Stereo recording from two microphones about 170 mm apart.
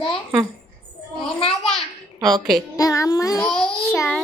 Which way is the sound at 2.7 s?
20° left (ahead or behind).